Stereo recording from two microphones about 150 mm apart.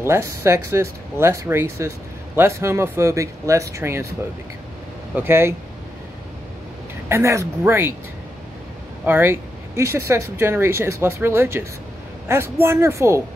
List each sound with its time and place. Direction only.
0.0 s speech: 20° right (ahead or behind)
5.1 s speech: 15° right (ahead or behind)
7.1 s speech: 20° right (ahead or behind)
9.0 s speech: 15° right (ahead or behind)